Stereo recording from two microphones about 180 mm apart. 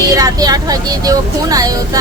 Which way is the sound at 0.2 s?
20° right (ahead or behind).